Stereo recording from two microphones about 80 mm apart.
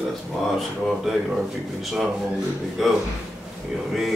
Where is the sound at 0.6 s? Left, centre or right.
Centre.